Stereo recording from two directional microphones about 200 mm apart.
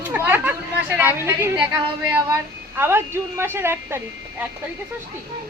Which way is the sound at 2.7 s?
10° right (ahead or behind).